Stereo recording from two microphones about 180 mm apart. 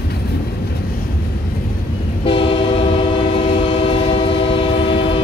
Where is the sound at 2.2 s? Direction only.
30° left (ahead or behind).